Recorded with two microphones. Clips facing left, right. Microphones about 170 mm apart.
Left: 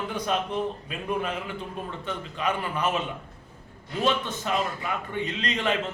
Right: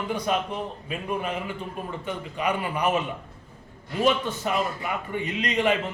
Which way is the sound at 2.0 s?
10° right (ahead or behind).